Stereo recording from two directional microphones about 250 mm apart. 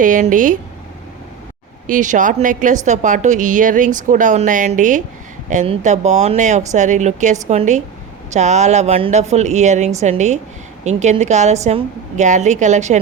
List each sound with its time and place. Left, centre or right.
0.0 s a woman's voice: right
1.9 s a woman's voice: right